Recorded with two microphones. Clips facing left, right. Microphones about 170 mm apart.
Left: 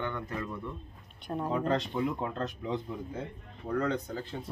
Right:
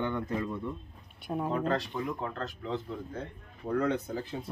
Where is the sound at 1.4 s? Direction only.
15° left (ahead or behind).